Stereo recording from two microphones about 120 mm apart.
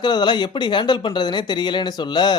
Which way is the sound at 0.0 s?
40° left (ahead or behind).